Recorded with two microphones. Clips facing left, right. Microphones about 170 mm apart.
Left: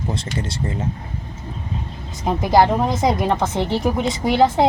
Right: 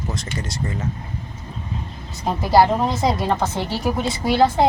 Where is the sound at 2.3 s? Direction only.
15° left (ahead or behind).